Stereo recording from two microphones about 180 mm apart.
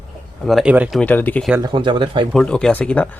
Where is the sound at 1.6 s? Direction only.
25° right (ahead or behind).